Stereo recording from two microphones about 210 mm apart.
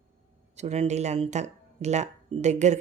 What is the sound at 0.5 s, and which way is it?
Speech, 30° right (ahead or behind).